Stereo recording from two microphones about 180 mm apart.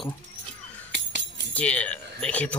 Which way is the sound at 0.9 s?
75° right (ahead or behind).